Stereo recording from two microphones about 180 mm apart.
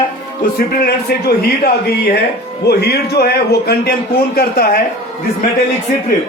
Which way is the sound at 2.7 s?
65° left (ahead or behind).